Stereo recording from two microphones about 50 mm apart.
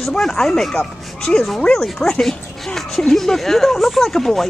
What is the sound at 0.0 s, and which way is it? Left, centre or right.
Speech, centre.